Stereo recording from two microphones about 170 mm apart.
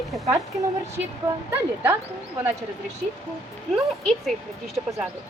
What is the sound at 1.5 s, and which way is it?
Speech, 15° right (ahead or behind).